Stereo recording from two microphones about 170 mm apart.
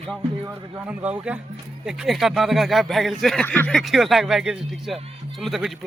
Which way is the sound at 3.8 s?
Centre (ahead or behind).